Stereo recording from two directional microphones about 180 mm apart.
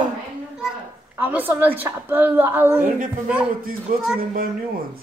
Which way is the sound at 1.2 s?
10° right (ahead or behind).